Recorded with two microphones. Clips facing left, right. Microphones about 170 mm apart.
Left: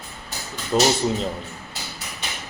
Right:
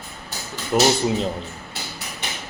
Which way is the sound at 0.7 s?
15° right (ahead or behind).